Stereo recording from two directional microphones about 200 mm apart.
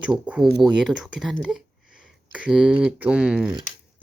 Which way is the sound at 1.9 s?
5° right (ahead or behind).